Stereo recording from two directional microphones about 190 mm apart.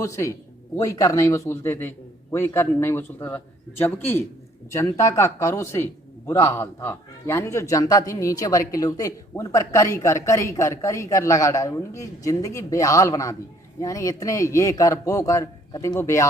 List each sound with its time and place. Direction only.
0.0 s a man's voice: 15° left (ahead or behind)